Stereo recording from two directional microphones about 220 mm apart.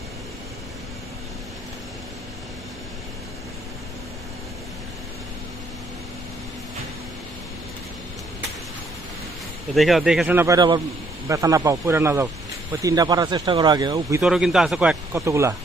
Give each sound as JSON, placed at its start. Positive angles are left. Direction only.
{"t": 9.7, "sound": "speech", "side_deg": 0}
{"t": 14.2, "sound": "speech", "side_deg": 0}